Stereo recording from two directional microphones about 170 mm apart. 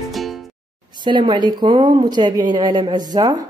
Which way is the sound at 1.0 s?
30° right (ahead or behind).